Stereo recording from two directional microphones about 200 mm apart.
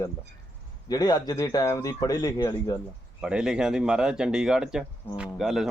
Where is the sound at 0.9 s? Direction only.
20° left (ahead or behind).